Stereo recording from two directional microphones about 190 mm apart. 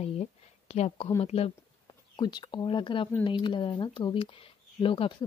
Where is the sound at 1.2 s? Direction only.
30° left (ahead or behind).